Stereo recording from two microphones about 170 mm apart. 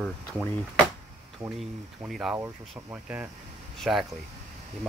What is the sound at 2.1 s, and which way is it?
Speech, 5° right (ahead or behind).